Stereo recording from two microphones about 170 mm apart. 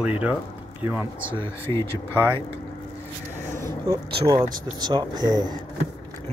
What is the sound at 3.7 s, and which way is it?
Speech, 25° right (ahead or behind).